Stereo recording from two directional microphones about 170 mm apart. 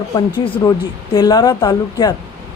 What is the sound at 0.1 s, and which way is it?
Speech, 20° left (ahead or behind).